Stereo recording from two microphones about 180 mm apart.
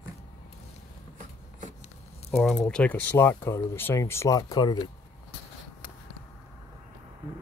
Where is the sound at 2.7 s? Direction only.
10° left (ahead or behind); by 4.9 s 25° left (ahead or behind).